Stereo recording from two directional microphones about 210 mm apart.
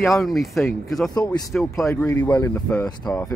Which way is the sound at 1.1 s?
20° left (ahead or behind).